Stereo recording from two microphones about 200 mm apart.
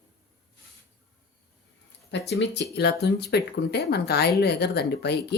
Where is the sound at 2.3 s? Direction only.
60° left (ahead or behind).